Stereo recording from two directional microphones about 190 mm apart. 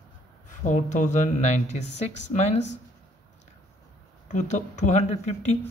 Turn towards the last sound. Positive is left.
turn(degrees=35)  # may be behind; listen again after turning